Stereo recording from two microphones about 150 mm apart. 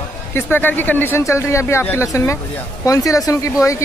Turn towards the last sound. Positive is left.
turn(degrees=20)  # may be behind; listen again after turning